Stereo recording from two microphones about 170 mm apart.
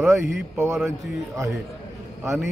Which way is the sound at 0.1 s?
15° right (ahead or behind).